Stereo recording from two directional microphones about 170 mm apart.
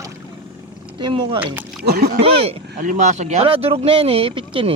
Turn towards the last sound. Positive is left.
turn(degrees=-30)  # may be behind; listen again after turning